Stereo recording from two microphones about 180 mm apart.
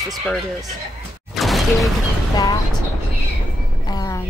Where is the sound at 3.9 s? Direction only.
20° left (ahead or behind).